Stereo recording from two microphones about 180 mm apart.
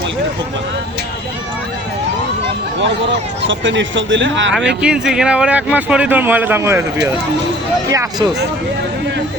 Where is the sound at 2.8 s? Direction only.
90° right.